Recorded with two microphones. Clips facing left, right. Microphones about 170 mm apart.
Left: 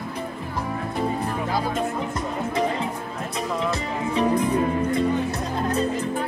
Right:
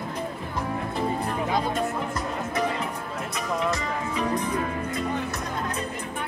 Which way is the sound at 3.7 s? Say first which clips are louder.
Left 2 dB; 30° left (ahead or behind).